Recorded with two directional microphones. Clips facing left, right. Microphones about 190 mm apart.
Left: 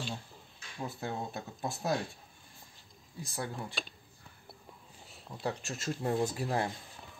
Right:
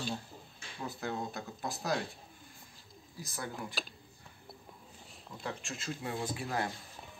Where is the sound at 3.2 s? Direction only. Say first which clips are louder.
Left 2 dB; 30° left (ahead or behind).